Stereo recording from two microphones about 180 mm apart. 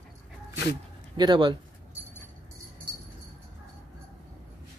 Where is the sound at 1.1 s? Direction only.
25° right (ahead or behind).